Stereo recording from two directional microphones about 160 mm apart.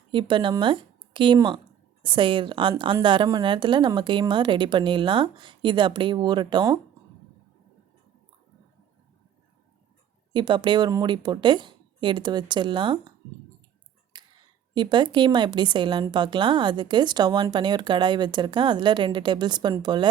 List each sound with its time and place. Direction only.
0.1 s a woman's voice: 30° right (ahead or behind)
10.3 s a woman's voice: 30° right (ahead or behind)
14.1 s a sound: 30° right (ahead or behind)
14.8 s a woman's voice: 30° right (ahead or behind)